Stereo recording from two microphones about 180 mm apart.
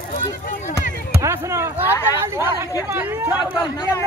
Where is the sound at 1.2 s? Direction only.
15° right (ahead or behind).